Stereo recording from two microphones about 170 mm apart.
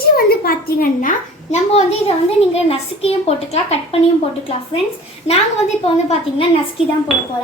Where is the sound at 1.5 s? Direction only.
40° left (ahead or behind).